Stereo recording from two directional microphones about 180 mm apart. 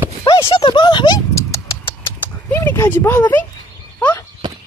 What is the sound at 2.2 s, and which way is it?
Clip-clop, 10° left (ahead or behind).